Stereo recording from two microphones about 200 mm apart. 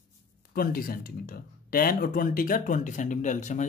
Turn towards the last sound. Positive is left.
turn(degrees=40)  # may be behind; listen again after turning